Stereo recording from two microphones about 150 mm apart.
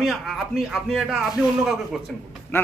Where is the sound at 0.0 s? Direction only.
Centre (ahead or behind).